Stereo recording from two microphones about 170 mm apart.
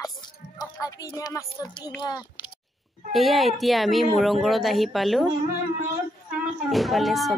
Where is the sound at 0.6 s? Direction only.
20° left (ahead or behind).